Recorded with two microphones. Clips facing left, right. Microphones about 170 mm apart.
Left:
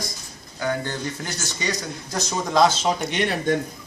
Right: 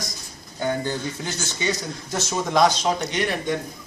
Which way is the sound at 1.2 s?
Centre (ahead or behind).